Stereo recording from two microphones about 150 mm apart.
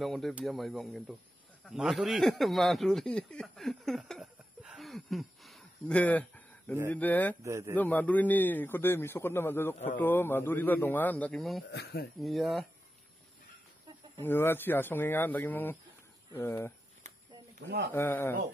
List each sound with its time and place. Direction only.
0.0 s a man's voice: centre (ahead or behind)
7.4 s a man's voice: 20° right (ahead or behind)
7.7 s a man's voice: 10° left (ahead or behind)
11.7 s speech: 90° left
12.2 s speech: centre (ahead or behind)
14.2 s a man's voice: 15° left (ahead or behind)
17.9 s a man's voice: 15° left (ahead or behind)